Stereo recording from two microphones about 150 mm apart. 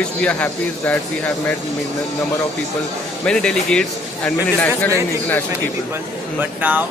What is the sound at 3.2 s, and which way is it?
A man's voice, 5° left (ahead or behind).